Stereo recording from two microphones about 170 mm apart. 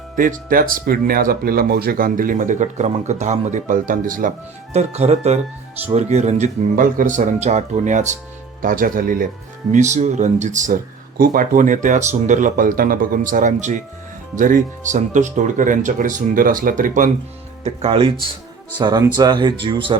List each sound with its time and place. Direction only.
0.2 s speech: 55° right (ahead or behind)
4.7 s speech: 40° right (ahead or behind); by 9.3 s 55° right (ahead or behind)
9.7 s speech: 45° right (ahead or behind)
17.6 s speech: 35° right (ahead or behind)